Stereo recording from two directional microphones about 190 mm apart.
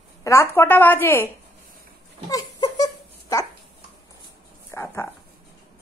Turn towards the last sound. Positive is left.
turn(degrees=15)  # may be behind; listen again after turning